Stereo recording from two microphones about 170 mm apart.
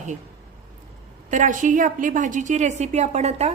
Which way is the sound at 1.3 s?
50° right (ahead or behind).